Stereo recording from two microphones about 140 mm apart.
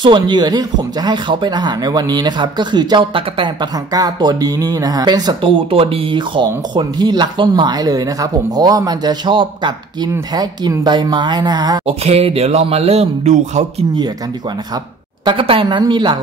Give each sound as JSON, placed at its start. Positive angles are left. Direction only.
{"t": 0.0, "sound": "speech", "side_deg": -35}
{"t": 11.8, "sound": "speech", "side_deg": -45}
{"t": 15.2, "sound": "speech", "side_deg": -40}